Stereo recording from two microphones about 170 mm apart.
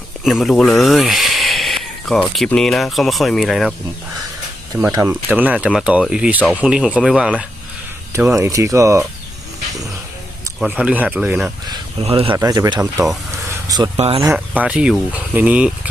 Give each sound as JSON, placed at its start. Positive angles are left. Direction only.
{"t": 0.3, "sound": "speech", "side_deg": 0}
{"t": 4.7, "sound": "speech", "side_deg": -20}
{"t": 8.1, "sound": "speech", "side_deg": -15}
{"t": 10.8, "sound": "speech", "side_deg": -10}
{"t": 11.7, "sound": "speech", "side_deg": -35}
{"t": 12.3, "sound": "speech", "side_deg": -20}
{"t": 13.9, "sound": "speech", "side_deg": -35}
{"t": 14.3, "sound": "speech", "side_deg": -10}